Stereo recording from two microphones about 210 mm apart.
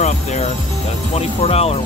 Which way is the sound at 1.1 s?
30° left (ahead or behind).